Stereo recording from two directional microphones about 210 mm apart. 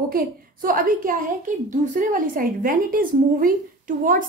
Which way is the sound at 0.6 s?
40° right (ahead or behind).